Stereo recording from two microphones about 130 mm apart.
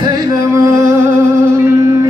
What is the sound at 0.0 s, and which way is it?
Music, 30° right (ahead or behind).